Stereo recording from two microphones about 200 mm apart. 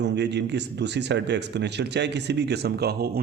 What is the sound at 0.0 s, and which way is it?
Speech, 60° right (ahead or behind).